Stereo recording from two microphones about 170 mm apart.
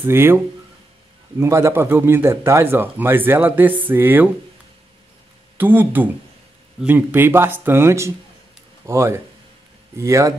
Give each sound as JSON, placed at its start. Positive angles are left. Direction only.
{"t": 0.0, "sound": "speech", "side_deg": -15}
{"t": 1.4, "sound": "speech", "side_deg": -15}
{"t": 5.6, "sound": "speech", "side_deg": -10}